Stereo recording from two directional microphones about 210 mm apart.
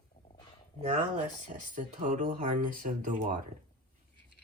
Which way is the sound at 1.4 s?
35° right (ahead or behind).